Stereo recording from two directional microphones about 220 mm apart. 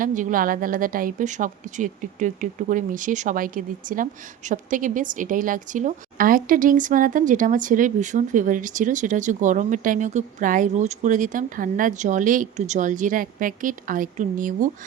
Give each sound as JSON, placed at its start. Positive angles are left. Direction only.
{"t": 0.0, "sound": "a woman's voice", "side_deg": -35}